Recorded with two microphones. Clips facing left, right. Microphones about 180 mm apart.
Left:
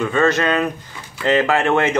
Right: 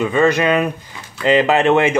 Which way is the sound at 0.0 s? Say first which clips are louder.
Right 2 dB; 10° right (ahead or behind).